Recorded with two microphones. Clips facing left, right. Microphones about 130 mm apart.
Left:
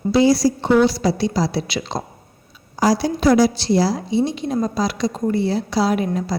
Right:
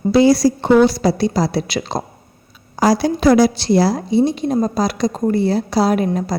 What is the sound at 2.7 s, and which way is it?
A woman's voice, 60° right (ahead or behind).